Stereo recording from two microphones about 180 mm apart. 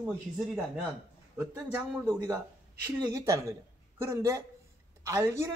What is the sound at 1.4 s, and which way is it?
A man's voice, 15° right (ahead or behind).